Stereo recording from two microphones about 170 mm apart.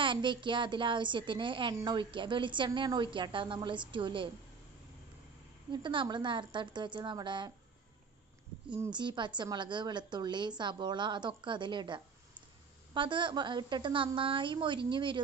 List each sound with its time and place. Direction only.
0.0 s a woman's voice: 30° right (ahead or behind)
5.7 s a woman's voice: 30° right (ahead or behind)
8.9 s a woman's voice: 25° right (ahead or behind)